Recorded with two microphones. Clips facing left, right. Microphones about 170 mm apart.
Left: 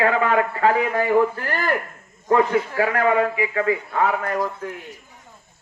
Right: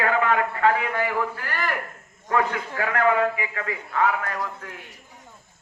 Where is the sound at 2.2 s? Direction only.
30° left (ahead or behind).